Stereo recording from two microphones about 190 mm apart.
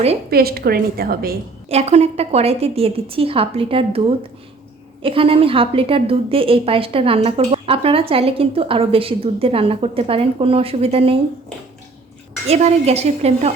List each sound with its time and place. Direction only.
0.3 s a woman's voice: 55° right (ahead or behind)
1.7 s a woman's voice: 35° right (ahead or behind)
12.5 s a woman's voice: 35° right (ahead or behind)